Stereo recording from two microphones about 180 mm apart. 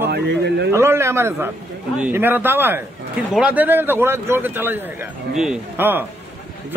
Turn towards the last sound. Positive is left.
turn(degrees=-10)  # may be behind; listen again after turning